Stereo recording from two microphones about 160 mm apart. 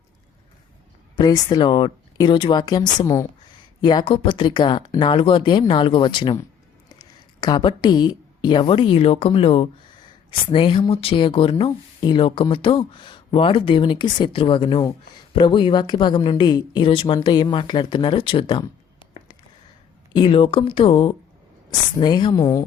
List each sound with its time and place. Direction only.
1.1 s a woman's voice: 25° left (ahead or behind)
20.1 s a woman's voice: 30° left (ahead or behind)